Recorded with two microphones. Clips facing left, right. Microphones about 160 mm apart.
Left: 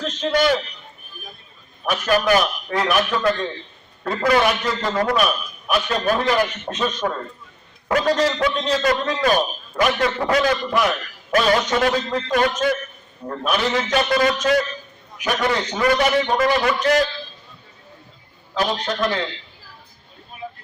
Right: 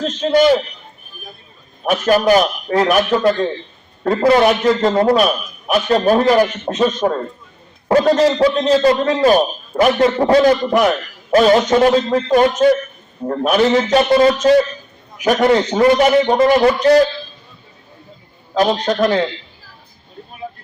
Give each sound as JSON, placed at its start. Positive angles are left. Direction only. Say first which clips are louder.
{"t": 0.3, "sound": "a man's voice", "louder": "right 7 dB", "side_deg": -30}
{"t": 1.8, "sound": "a man's voice", "louder": "right 6 dB", "side_deg": -40}
{"t": 4.8, "sound": "a man's voice", "louder": "right 7 dB", "side_deg": -30}
{"t": 13.4, "sound": "a man's voice", "louder": "right 8 dB", "side_deg": -40}
{"t": 13.7, "sound": "a man's voice", "louder": "right 5 dB", "side_deg": -30}
{"t": 18.6, "sound": "a man's voice", "louder": "right 7 dB", "side_deg": -40}